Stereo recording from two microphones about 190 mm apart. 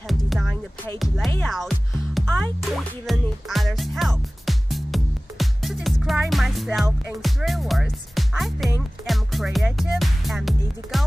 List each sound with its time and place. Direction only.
0.3 s music: centre (ahead or behind)
1.3 s speech: 5° left (ahead or behind)
2.1 s music: 5° left (ahead or behind)